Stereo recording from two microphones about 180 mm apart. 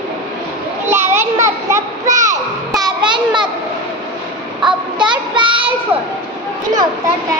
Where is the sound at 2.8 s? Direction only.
25° right (ahead or behind).